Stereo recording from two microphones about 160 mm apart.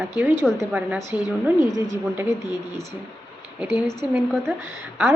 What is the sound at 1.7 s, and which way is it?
Speech, 20° right (ahead or behind).